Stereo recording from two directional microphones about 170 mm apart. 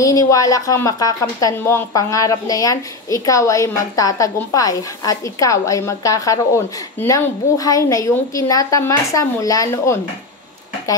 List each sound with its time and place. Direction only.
0.0 s a woman's voice: 20° left (ahead or behind)